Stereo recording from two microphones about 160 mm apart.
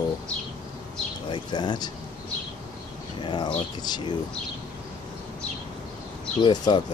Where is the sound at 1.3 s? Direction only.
25° left (ahead or behind).